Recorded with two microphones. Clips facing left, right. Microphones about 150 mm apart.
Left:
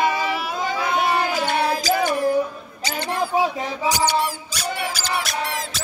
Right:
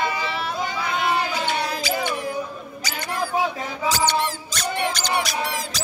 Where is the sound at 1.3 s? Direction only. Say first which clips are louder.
Left 4 dB; 50° left (ahead or behind).